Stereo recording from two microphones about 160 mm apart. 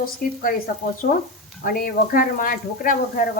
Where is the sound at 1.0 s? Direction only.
70° left (ahead or behind).